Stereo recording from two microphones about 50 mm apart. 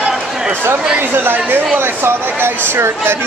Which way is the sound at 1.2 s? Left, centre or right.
Right.